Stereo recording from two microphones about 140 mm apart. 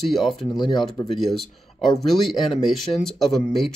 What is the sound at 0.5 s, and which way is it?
Speech, 25° left (ahead or behind).